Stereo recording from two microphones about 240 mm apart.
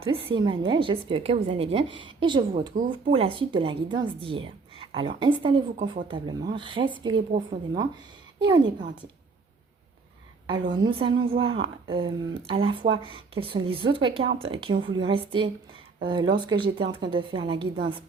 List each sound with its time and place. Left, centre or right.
0.3 s speech: centre
8.4 s speech: centre
10.5 s speech: centre